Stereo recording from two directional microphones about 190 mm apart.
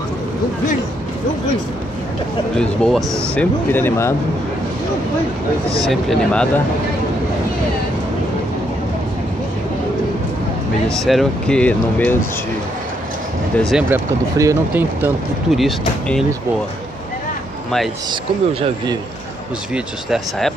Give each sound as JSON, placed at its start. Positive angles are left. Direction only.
{"t": 2.5, "sound": "speech", "side_deg": 5}
{"t": 5.9, "sound": "speech", "side_deg": 5}
{"t": 10.9, "sound": "speech", "side_deg": 0}
{"t": 13.6, "sound": "speech", "side_deg": 0}
{"t": 13.8, "sound": "speech", "side_deg": -15}
{"t": 18.5, "sound": "speech", "side_deg": -30}
{"t": 19.7, "sound": "speech", "side_deg": 0}